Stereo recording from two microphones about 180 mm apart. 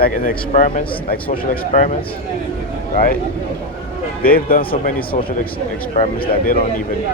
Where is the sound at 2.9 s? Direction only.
55° left (ahead or behind).